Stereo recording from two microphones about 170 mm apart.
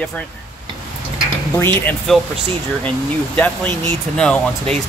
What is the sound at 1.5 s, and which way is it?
Speech, 10° left (ahead or behind).